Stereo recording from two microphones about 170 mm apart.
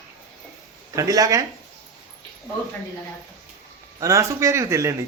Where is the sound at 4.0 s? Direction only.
15° right (ahead or behind).